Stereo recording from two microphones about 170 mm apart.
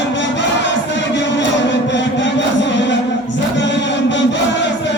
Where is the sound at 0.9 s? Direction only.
90° left.